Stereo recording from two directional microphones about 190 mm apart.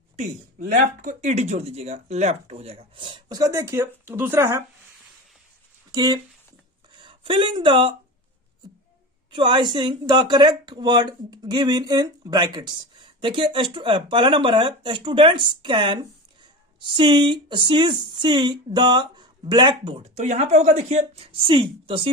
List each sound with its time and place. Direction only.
1.0 s speech: 35° right (ahead or behind); by 4.6 s 15° right (ahead or behind)
5.9 s a sound: 20° right (ahead or behind)
7.0 s speech: 25° right (ahead or behind)
9.3 s speech: 25° right (ahead or behind)